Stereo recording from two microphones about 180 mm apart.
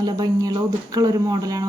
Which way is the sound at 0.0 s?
20° right (ahead or behind).